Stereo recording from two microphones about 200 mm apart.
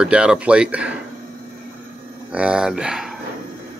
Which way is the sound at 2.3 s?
5° right (ahead or behind).